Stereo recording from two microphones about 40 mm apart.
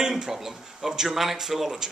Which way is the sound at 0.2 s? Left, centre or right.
Centre.